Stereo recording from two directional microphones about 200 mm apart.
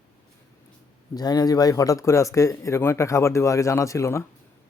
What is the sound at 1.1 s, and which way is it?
Speech, 20° left (ahead or behind).